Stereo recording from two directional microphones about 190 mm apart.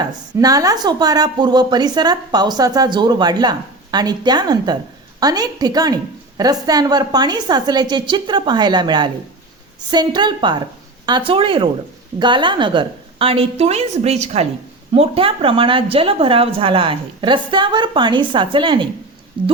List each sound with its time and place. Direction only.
0.0 s a woman's voice: 20° right (ahead or behind)